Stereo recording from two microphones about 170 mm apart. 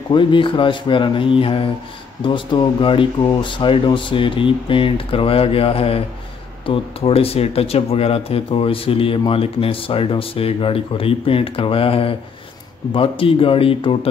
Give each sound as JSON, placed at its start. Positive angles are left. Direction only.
{"t": 0.1, "sound": "speech", "side_deg": 30}